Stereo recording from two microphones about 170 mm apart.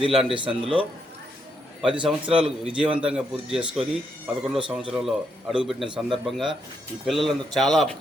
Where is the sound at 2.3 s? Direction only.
35° right (ahead or behind).